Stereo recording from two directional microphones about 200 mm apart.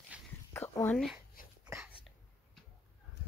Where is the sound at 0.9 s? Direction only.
Centre (ahead or behind).